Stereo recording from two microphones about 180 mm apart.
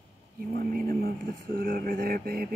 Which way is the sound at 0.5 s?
55° right (ahead or behind).